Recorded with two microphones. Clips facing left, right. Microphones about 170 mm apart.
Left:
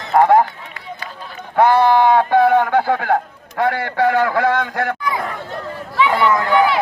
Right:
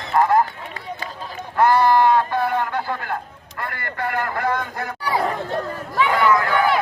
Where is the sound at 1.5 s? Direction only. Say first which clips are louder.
Left 3 dB; 65° left (ahead or behind).